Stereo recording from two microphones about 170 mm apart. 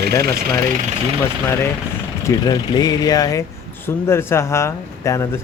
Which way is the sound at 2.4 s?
25° left (ahead or behind).